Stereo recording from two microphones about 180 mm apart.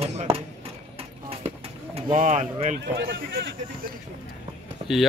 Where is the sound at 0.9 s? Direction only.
30° right (ahead or behind).